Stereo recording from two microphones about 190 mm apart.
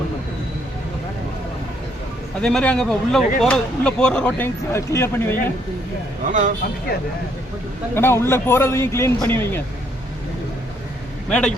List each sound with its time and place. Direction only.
2.4 s speech: 5° left (ahead or behind)
6.2 s a man's voice: 40° right (ahead or behind)
7.9 s speech: 15° left (ahead or behind)
11.3 s speech: 5° left (ahead or behind)